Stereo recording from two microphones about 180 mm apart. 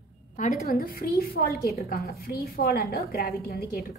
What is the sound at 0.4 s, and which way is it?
A woman's voice, 55° left (ahead or behind).